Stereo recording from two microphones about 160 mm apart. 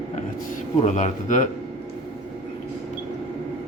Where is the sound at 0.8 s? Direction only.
50° left (ahead or behind).